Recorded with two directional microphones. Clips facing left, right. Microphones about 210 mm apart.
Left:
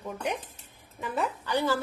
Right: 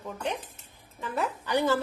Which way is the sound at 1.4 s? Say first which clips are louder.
Right 3 dB; 15° right (ahead or behind).